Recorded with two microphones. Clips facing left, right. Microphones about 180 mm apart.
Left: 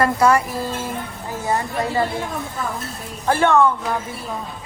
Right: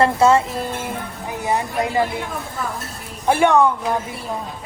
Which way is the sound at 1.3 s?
15° right (ahead or behind).